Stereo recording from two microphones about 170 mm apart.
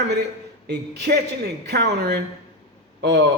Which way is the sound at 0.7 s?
75° right (ahead or behind).